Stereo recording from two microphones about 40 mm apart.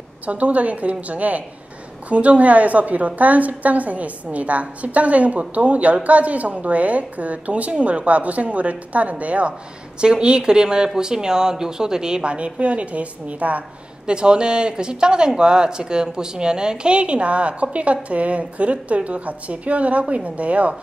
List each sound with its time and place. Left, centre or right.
0.3 s a woman's voice: right
9.9 s speech: right
14.0 s speech: right